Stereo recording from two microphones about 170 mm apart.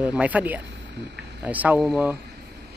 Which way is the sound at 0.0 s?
10° right (ahead or behind).